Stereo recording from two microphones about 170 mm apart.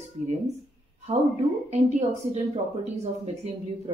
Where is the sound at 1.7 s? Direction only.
40° right (ahead or behind).